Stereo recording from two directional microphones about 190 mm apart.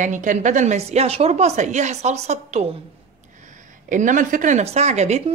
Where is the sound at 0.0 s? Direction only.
40° right (ahead or behind).